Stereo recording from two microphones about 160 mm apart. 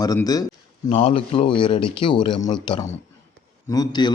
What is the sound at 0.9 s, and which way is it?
A man's voice, 35° left (ahead or behind).